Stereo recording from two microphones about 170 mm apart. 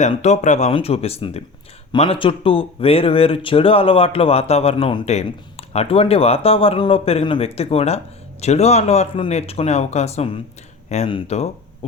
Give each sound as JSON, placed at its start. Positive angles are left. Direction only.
{"t": 0.0, "sound": "speech", "side_deg": 40}